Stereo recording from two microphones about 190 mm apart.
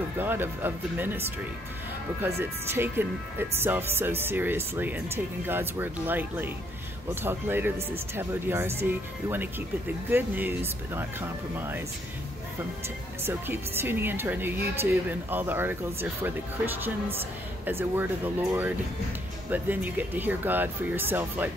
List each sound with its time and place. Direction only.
0.2 s a woman's voice: 10° right (ahead or behind)
2.2 s a woman's voice: 15° right (ahead or behind)
13.2 s a woman's voice: 10° right (ahead or behind)